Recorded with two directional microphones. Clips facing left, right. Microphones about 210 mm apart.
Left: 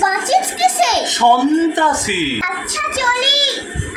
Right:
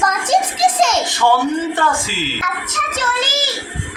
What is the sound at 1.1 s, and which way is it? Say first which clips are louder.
Speech: left 4 dB; 20° left (ahead or behind).